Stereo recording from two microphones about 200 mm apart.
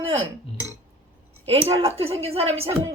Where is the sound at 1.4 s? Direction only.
30° right (ahead or behind).